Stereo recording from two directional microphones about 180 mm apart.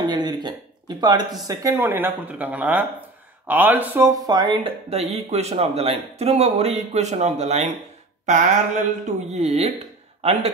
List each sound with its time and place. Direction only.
0.0 s a sound: 25° right (ahead or behind)
1.5 s speech: 15° right (ahead or behind)
4.3 s speech: 25° right (ahead or behind)